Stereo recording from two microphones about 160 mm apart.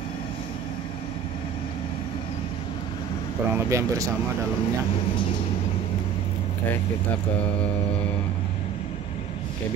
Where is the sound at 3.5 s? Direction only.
20° right (ahead or behind).